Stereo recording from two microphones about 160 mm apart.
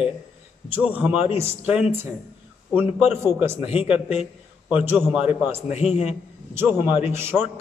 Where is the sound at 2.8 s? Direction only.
40° left (ahead or behind).